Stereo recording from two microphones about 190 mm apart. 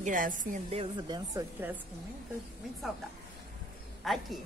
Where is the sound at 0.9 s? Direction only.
20° right (ahead or behind).